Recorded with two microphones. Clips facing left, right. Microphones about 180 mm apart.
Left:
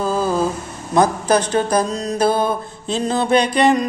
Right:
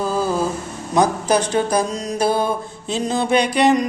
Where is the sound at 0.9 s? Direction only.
10° right (ahead or behind).